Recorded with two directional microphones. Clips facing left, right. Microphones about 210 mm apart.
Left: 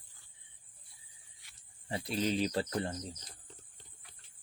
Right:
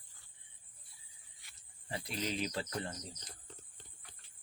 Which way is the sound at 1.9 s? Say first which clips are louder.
Left 6 dB; 30° left (ahead or behind).